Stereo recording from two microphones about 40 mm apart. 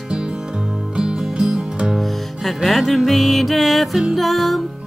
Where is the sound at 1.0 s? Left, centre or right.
Centre.